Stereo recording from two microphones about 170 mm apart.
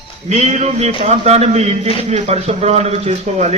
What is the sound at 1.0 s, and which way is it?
A man's voice, 40° right (ahead or behind).